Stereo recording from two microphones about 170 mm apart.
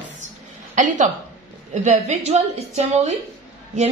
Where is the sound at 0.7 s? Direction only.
45° right (ahead or behind).